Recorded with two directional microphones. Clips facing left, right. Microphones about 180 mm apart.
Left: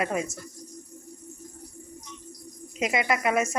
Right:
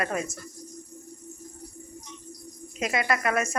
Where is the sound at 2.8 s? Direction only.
15° left (ahead or behind).